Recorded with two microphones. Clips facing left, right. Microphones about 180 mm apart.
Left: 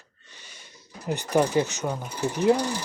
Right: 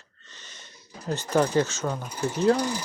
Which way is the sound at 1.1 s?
15° left (ahead or behind).